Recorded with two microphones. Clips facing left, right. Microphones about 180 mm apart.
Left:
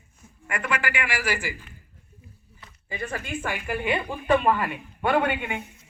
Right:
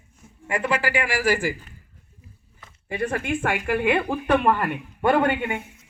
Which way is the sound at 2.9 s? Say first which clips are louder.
Right 7 dB; 65° right (ahead or behind).